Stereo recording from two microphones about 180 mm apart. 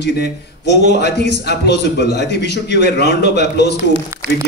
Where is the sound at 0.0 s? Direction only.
70° left (ahead or behind).